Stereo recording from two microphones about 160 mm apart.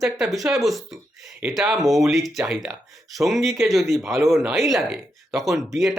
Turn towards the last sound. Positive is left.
turn(degrees=0)  # may be behind; listen again after turning